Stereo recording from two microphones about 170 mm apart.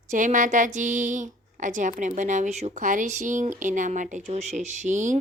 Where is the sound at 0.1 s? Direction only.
45° right (ahead or behind).